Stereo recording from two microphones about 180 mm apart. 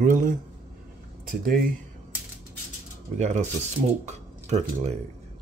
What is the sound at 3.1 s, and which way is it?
Speech, 40° right (ahead or behind).